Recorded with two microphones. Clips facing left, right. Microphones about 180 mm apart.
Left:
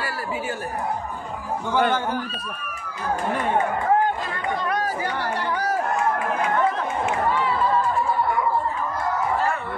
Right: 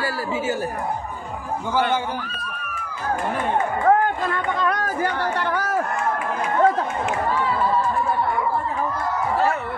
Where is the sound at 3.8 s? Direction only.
55° right (ahead or behind).